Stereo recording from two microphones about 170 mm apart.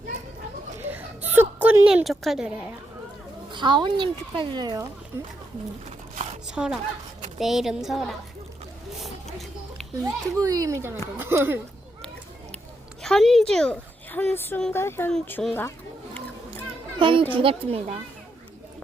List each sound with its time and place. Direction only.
0.8 s a sound: 10° right (ahead or behind)
3.5 s speech: 25° right (ahead or behind)
6.5 s a woman's voice: 5° right (ahead or behind)
10.0 s speech: 20° right (ahead or behind)
13.0 s a woman's voice: centre (ahead or behind)
17.0 s a child's voice: 30° right (ahead or behind)